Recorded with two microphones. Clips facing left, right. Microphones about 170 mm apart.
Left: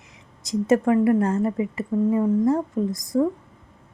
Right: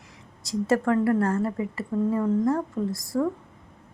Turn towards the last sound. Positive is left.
turn(degrees=20)  # may be behind; listen again after turning